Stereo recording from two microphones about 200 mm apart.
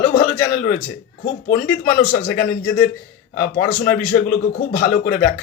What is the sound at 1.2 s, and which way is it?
Speech, 50° left (ahead or behind).